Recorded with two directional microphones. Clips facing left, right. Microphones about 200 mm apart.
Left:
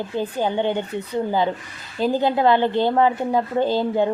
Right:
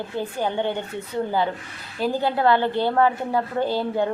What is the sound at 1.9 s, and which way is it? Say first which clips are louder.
A woman's voice: left 3 dB; 20° left (ahead or behind).